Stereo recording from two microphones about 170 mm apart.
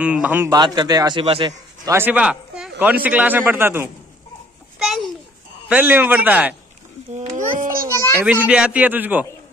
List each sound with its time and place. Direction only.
0.0 s speech: 10° right (ahead or behind)
0.5 s speech: 25° right (ahead or behind)
1.9 s speech: 10° right (ahead or behind)
4.7 s babbling: centre (ahead or behind)
5.7 s speech: 10° right (ahead or behind)
7.2 s a sound: 45° right (ahead or behind)
7.9 s children playing: 15° left (ahead or behind)
8.5 s speech: 5° right (ahead or behind)